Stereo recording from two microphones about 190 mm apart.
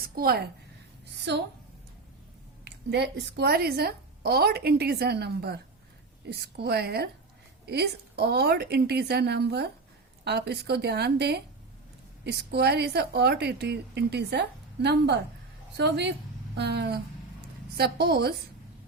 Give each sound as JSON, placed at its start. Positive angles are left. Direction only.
{"t": 0.2, "sound": "a woman's voice", "side_deg": -55}
{"t": 1.3, "sound": "a woman's voice", "side_deg": -65}
{"t": 2.6, "sound": "a woman's voice", "side_deg": -60}